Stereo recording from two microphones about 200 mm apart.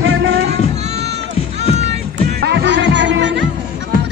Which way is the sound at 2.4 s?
60° right (ahead or behind).